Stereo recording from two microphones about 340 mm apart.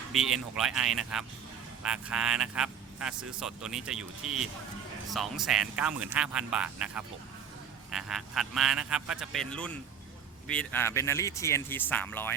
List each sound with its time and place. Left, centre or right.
0.5 s a man's voice: centre